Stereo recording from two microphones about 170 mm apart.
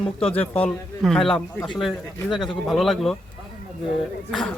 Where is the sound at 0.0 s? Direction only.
5° left (ahead or behind).